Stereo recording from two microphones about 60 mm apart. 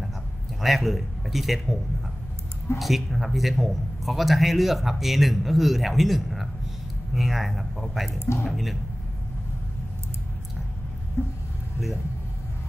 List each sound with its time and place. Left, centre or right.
0.6 s a man's voice: centre
2.8 s a man's voice: centre
11.2 s speech: left